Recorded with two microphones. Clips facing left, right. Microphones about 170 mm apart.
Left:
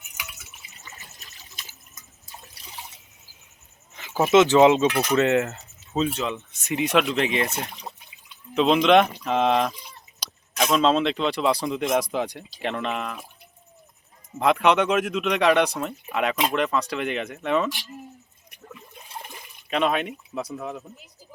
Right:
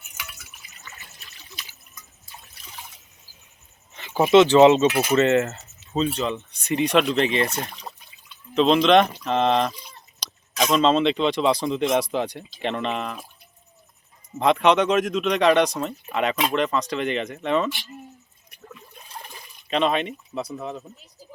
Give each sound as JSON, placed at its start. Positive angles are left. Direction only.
{"t": 0.2, "sound": "water", "side_deg": 20}
{"t": 3.9, "sound": "speech", "side_deg": 5}
{"t": 14.3, "sound": "speech", "side_deg": 10}
{"t": 19.2, "sound": "water", "side_deg": 10}
{"t": 20.6, "sound": "speech", "side_deg": 10}